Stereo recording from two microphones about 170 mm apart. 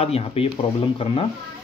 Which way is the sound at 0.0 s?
35° left (ahead or behind).